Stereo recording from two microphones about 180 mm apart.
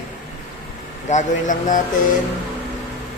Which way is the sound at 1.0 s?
45° left (ahead or behind).